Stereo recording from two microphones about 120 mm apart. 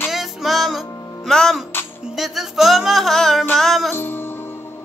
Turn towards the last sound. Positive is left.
turn(degrees=15)  # may be behind; listen again after turning